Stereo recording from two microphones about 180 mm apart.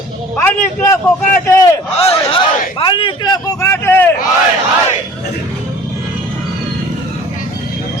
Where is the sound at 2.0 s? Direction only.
30° left (ahead or behind); by 4.1 s 10° left (ahead or behind).